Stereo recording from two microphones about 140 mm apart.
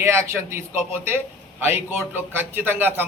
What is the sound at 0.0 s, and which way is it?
A man's voice, 20° right (ahead or behind).